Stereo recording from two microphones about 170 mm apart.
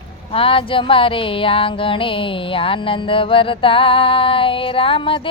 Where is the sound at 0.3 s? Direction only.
30° left (ahead or behind).